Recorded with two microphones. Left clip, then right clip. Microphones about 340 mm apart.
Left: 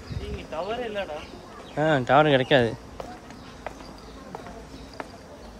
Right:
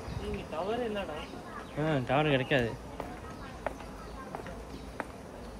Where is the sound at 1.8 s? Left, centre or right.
Centre.